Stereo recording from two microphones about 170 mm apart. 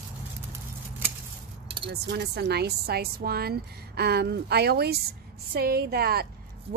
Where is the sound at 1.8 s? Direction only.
75° right (ahead or behind).